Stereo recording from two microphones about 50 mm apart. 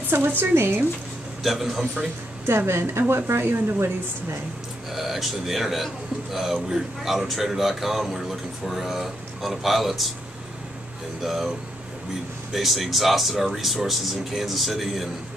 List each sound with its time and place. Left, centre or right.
0.4 s speech: right
1.4 s a man's voice: centre
2.4 s a woman's voice: right
4.9 s a man's voice: centre
11.2 s a man's voice: centre
12.5 s a man's voice: centre